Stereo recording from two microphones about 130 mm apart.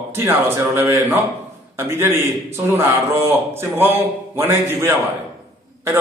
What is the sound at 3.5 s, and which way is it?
A man's voice, 15° right (ahead or behind).